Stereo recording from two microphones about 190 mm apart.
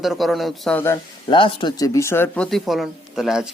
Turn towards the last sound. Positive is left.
turn(degrees=-5)  # may be behind; listen again after turning